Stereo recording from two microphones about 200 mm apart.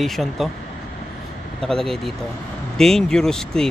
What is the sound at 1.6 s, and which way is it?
Speech, centre (ahead or behind).